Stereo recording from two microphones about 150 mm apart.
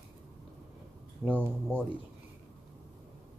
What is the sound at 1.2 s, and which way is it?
Speech, 10° right (ahead or behind).